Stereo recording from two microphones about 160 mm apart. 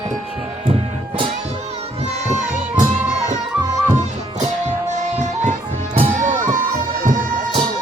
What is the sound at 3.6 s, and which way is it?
Music, 25° right (ahead or behind).